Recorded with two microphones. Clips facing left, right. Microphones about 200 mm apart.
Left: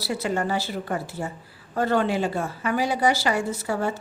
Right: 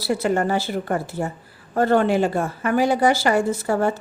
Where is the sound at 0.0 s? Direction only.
50° right (ahead or behind).